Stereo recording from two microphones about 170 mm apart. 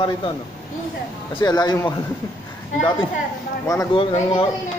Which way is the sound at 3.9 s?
30° left (ahead or behind).